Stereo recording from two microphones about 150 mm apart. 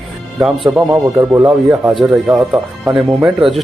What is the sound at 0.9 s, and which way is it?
Speech, 15° right (ahead or behind).